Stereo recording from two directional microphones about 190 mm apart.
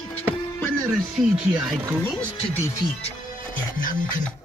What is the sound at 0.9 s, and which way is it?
Speech, 5° right (ahead or behind).